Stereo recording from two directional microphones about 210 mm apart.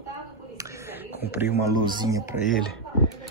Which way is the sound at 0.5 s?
15° right (ahead or behind).